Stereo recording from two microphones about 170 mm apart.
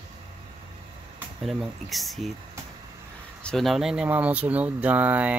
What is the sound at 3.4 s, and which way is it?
Speech, centre (ahead or behind).